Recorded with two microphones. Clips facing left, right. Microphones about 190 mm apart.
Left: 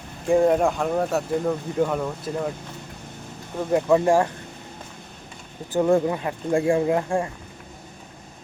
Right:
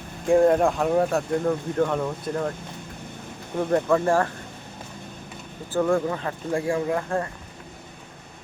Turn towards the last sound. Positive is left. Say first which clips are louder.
# left 3 dB
turn(degrees=15)  # may be behind; listen again after turning